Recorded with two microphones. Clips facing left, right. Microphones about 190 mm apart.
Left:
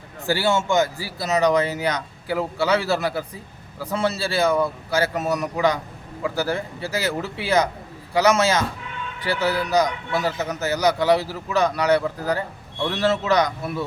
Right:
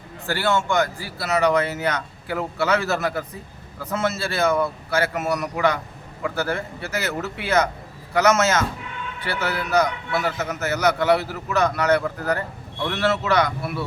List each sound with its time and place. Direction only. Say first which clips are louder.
0.3 s speech: left 1 dB; 15° left (ahead or behind)